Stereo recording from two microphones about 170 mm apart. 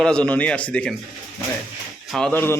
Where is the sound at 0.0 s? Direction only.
5° left (ahead or behind).